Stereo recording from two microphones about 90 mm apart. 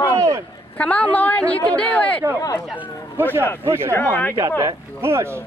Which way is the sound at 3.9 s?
20° left (ahead or behind).